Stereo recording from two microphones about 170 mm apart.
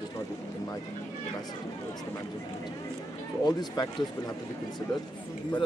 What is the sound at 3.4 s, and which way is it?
Speech, 25° left (ahead or behind).